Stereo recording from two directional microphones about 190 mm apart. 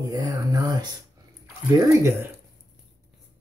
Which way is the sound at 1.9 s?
15° right (ahead or behind).